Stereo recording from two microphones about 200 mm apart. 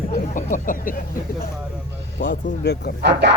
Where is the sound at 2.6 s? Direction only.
55° left (ahead or behind).